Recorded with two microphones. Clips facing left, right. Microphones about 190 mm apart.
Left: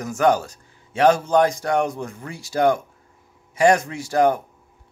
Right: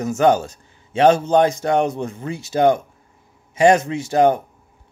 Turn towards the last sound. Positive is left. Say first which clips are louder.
# right 3 dB
turn(degrees=-20)  # may be behind; listen again after turning